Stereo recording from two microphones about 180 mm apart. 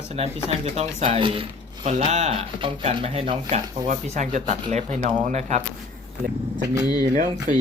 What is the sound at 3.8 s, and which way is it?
Speech, 45° right (ahead or behind).